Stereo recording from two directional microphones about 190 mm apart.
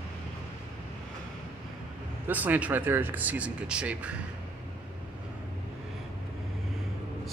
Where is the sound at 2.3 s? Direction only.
10° right (ahead or behind).